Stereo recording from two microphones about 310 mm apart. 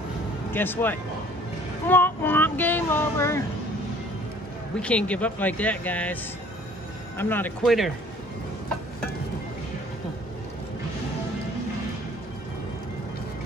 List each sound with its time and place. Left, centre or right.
0.5 s speech: centre
1.9 s child singing: centre
4.7 s a man's voice: centre
7.2 s a man's voice: centre